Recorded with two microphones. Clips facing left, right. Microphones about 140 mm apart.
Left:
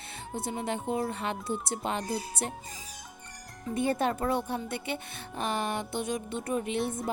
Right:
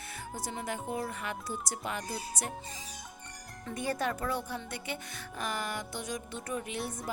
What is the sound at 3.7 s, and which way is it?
Speech, 25° left (ahead or behind).